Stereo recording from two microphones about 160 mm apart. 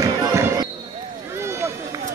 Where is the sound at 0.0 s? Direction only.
20° right (ahead or behind).